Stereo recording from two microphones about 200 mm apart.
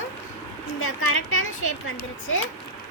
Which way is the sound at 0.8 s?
90° left.